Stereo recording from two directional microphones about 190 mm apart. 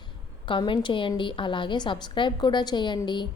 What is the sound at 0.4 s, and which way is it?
A woman's voice, 25° left (ahead or behind).